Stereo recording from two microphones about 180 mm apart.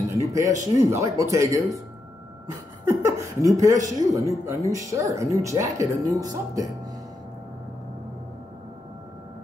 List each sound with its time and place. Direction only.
0.2 s speech: 15° right (ahead or behind)